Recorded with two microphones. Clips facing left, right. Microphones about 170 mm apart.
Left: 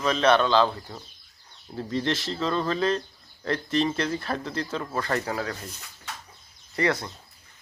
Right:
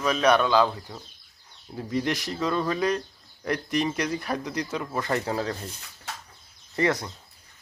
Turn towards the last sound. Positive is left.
turn(degrees=-20)  # may be behind; listen again after turning